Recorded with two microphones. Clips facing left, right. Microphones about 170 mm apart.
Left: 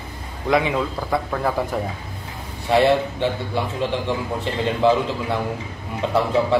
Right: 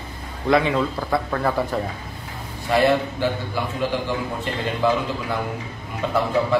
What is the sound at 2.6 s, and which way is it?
A man's voice, 25° left (ahead or behind).